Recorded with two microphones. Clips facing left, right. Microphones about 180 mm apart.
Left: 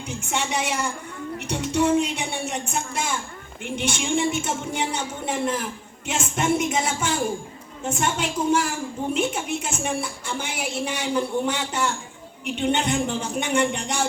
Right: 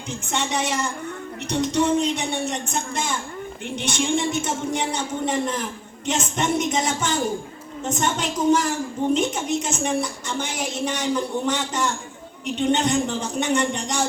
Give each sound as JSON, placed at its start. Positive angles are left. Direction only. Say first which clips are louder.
{"t": 0.1, "sound": "a woman's voice", "louder": "right 1 dB", "side_deg": 10}